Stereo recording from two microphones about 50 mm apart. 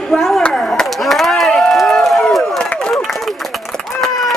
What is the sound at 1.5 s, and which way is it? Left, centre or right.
Run, centre.